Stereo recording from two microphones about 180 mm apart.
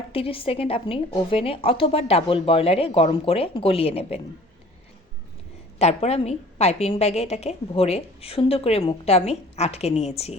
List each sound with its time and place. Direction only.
0.1 s a woman's voice: 30° left (ahead or behind)
5.8 s a woman's voice: 35° left (ahead or behind)